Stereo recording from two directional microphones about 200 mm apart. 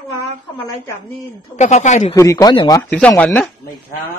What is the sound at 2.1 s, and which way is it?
Speech, 15° left (ahead or behind).